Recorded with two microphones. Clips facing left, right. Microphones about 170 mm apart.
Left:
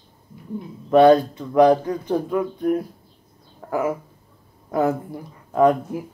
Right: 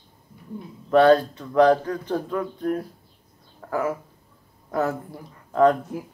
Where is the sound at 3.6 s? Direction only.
15° left (ahead or behind).